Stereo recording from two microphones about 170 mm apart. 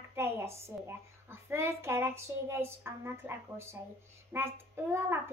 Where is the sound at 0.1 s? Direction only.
15° right (ahead or behind).